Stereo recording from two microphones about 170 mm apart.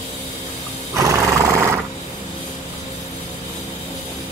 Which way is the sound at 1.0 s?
15° right (ahead or behind).